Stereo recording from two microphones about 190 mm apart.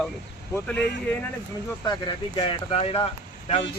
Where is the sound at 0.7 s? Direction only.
10° left (ahead or behind).